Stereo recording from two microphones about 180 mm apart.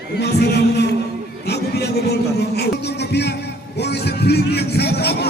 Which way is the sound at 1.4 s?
65° left (ahead or behind).